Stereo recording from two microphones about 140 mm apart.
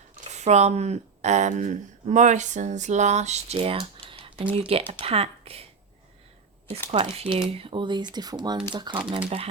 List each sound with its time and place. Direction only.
0.3 s a woman's voice: 55° right (ahead or behind)
6.9 s speech: 40° right (ahead or behind)